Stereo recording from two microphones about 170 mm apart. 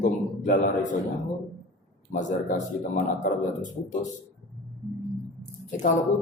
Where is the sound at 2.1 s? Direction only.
50° left (ahead or behind).